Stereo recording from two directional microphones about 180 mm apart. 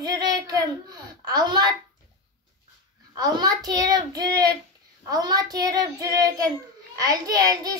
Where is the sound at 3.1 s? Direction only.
20° right (ahead or behind).